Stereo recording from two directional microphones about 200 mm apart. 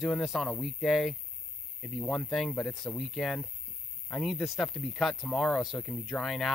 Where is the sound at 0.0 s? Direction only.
Centre (ahead or behind).